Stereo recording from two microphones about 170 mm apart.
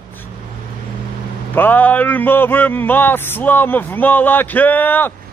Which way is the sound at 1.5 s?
10° left (ahead or behind).